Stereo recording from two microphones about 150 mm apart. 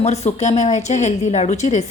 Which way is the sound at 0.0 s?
45° left (ahead or behind).